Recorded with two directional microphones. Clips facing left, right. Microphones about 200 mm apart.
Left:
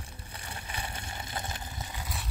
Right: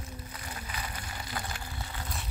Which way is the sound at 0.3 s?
30° left (ahead or behind).